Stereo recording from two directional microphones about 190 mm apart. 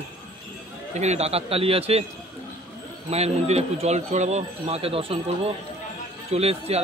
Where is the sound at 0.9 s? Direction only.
35° right (ahead or behind).